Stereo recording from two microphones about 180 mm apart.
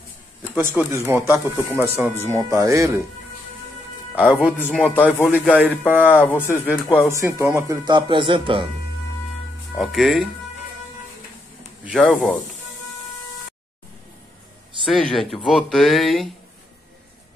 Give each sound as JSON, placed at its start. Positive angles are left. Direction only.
{"t": 0.7, "sound": "speech", "side_deg": -15}
{"t": 4.1, "sound": "speech", "side_deg": -5}
{"t": 4.6, "sound": "speech", "side_deg": 10}
{"t": 5.4, "sound": "speech", "side_deg": -10}
{"t": 6.2, "sound": "speech", "side_deg": 10}
{"t": 7.1, "sound": "speech", "side_deg": -15}
{"t": 9.8, "sound": "speech", "side_deg": 0}
{"t": 12.1, "sound": "speech", "side_deg": 0}
{"t": 14.9, "sound": "speech", "side_deg": 0}